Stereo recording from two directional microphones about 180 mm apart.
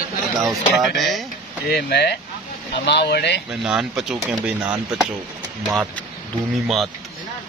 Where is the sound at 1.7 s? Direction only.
65° left (ahead or behind).